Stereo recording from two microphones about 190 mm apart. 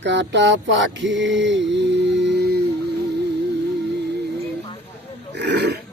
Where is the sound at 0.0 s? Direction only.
70° right (ahead or behind).